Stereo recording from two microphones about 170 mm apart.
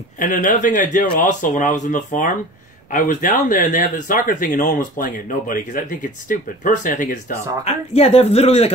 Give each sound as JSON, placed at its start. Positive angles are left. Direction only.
{"t": 0.2, "sound": "speech", "side_deg": 50}
{"t": 7.6, "sound": "speech", "side_deg": 40}